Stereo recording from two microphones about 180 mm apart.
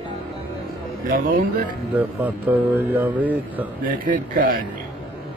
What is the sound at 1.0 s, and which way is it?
Speech, 50° right (ahead or behind).